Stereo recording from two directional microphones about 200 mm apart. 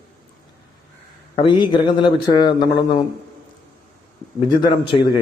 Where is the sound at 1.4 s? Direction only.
25° left (ahead or behind).